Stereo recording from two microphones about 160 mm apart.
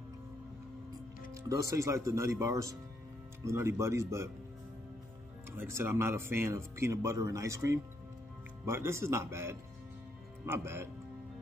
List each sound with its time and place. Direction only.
1.3 s speech: 20° right (ahead or behind)
5.8 s speech: 15° right (ahead or behind)